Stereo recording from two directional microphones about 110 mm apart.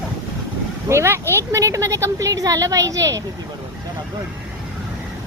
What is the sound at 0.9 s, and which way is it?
A woman's voice, 25° right (ahead or behind).